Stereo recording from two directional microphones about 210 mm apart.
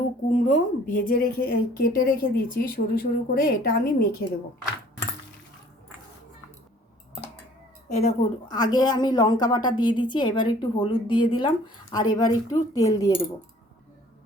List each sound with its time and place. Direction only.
0.3 s a woman's voice: 35° left (ahead or behind)
7.9 s speech: 30° left (ahead or behind)
8.4 s a woman's voice: 20° left (ahead or behind)